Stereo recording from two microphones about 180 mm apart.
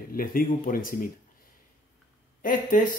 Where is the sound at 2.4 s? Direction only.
50° left (ahead or behind).